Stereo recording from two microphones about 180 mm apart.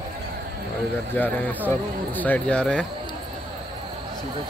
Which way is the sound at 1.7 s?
10° left (ahead or behind).